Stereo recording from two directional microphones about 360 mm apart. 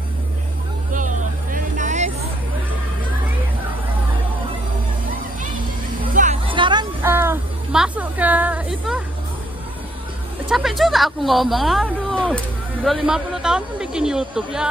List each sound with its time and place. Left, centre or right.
0.9 s vehicle: right
6.1 s music: centre
10.5 s speech: centre